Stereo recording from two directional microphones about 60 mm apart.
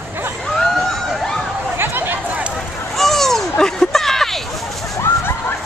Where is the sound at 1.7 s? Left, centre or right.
Right.